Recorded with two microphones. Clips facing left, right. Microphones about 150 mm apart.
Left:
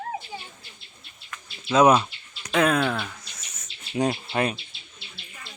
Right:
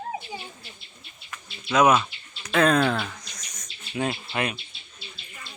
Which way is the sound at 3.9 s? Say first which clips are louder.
Left 3 dB; 35° left (ahead or behind).